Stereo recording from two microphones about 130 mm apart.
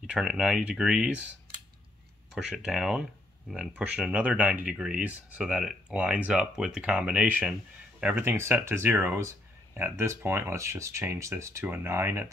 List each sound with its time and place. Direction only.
0.0 s speech: 5° right (ahead or behind)
2.3 s speech: 5° right (ahead or behind)